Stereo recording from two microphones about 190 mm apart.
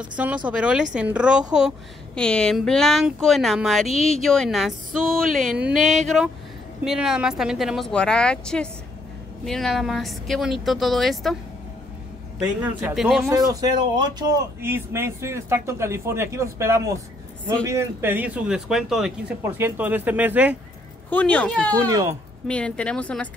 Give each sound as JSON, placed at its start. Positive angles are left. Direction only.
{"t": 0.5, "sound": "speech", "side_deg": -5}
{"t": 2.1, "sound": "speech", "side_deg": 5}
{"t": 12.6, "sound": "speech", "side_deg": -5}
{"t": 13.3, "sound": "speech", "side_deg": -20}
{"t": 21.1, "sound": "speech", "side_deg": 5}
{"t": 21.7, "sound": "speech", "side_deg": -15}
{"t": 22.5, "sound": "speech", "side_deg": 5}